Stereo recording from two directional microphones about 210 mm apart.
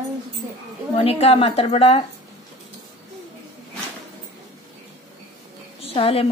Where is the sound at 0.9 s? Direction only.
30° left (ahead or behind).